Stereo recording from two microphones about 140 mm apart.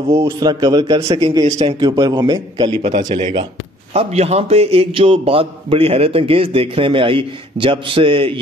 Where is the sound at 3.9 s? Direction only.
45° right (ahead or behind).